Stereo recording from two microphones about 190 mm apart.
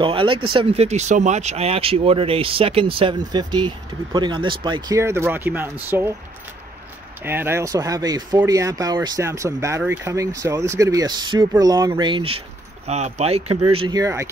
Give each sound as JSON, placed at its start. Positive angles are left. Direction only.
{"t": 0.0, "sound": "speech", "side_deg": -25}
{"t": 7.2, "sound": "speech", "side_deg": -10}